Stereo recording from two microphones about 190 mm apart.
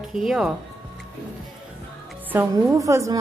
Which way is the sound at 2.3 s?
10° right (ahead or behind).